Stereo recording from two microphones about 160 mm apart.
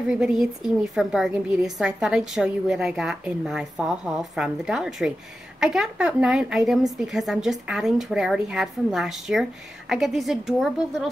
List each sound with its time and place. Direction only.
0.1 s a woman's voice: 5° right (ahead or behind)